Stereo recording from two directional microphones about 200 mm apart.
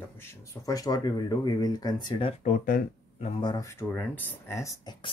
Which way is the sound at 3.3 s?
25° left (ahead or behind).